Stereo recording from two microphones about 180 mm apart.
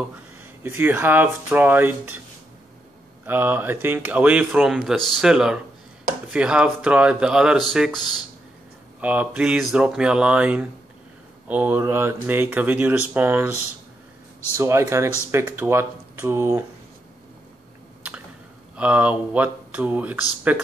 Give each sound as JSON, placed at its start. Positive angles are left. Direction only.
{"t": 0.7, "sound": "speech", "side_deg": -10}
{"t": 3.3, "sound": "speech", "side_deg": -10}
{"t": 9.0, "sound": "speech", "side_deg": -10}
{"t": 14.6, "sound": "speech", "side_deg": -15}
{"t": 18.8, "sound": "speech", "side_deg": -10}